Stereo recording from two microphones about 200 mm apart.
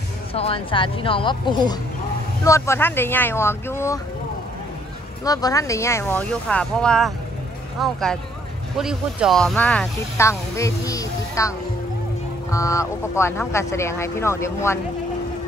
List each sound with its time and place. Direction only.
0.3 s speech: 30° left (ahead or behind)
5.2 s speech: 20° left (ahead or behind)